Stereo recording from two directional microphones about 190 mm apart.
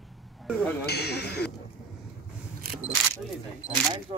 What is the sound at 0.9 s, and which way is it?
Speech, 60° left (ahead or behind).